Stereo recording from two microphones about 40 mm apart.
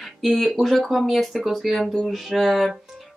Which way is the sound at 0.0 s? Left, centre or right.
Centre.